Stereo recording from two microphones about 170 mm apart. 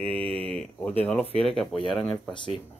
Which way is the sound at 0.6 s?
5° left (ahead or behind).